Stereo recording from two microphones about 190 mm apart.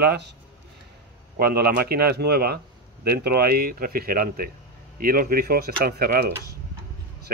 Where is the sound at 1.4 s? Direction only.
55° right (ahead or behind).